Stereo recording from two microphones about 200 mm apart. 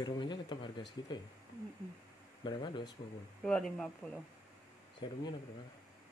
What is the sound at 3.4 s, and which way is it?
Speech, 5° left (ahead or behind).